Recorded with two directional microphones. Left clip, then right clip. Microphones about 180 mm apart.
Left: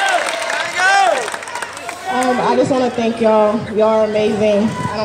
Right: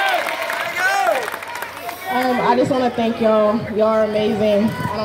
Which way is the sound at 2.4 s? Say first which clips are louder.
Even; 5° left (ahead or behind).